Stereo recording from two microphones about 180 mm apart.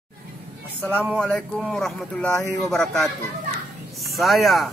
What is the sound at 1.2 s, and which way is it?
Speech, 5° left (ahead or behind).